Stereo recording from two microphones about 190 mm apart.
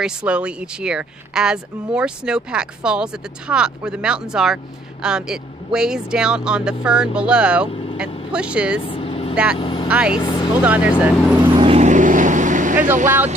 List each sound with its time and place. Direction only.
0.0 s speech: 5° right (ahead or behind)
7.7 s vehicle: 30° left (ahead or behind)
8.3 s speech: 5° right (ahead or behind)
8.8 s vehicle: 30° left (ahead or behind)
9.3 s speech: 5° right (ahead or behind)
9.6 s speech: 25° left (ahead or behind)
9.8 s speech: 5° right (ahead or behind)
10.1 s speech: 25° left (ahead or behind)
10.6 s speech: 5° right (ahead or behind)
11.4 s vehicle: 25° right (ahead or behind)